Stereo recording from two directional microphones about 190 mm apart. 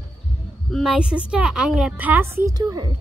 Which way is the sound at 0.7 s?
Centre (ahead or behind).